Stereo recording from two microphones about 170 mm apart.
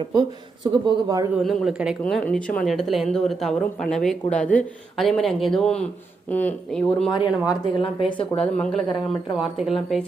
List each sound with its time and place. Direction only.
0.0 s speech: 25° right (ahead or behind)
1.4 s a woman's voice: centre (ahead or behind)
7.1 s speech: 30° left (ahead or behind)
8.4 s a woman's voice: 5° left (ahead or behind)